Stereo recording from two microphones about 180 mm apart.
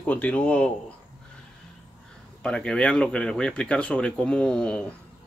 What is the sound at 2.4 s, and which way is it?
Speech, 5° left (ahead or behind).